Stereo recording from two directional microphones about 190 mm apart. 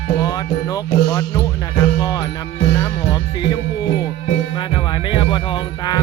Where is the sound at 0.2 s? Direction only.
20° left (ahead or behind).